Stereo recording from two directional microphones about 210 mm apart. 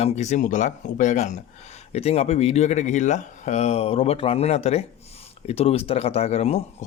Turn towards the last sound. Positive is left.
turn(degrees=30)  # may be behind; listen again after turning